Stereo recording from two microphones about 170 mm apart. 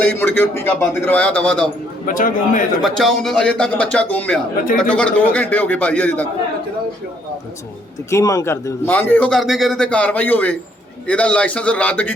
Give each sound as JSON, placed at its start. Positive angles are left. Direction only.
{"t": 0.0, "sound": "a man's voice", "side_deg": 10}
{"t": 2.0, "sound": "a man's voice", "side_deg": 55}
{"t": 2.8, "sound": "a man's voice", "side_deg": 0}
{"t": 8.1, "sound": "a man's voice", "side_deg": 20}